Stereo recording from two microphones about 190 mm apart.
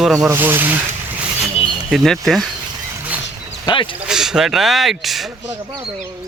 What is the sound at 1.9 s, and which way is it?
Speech, centre (ahead or behind).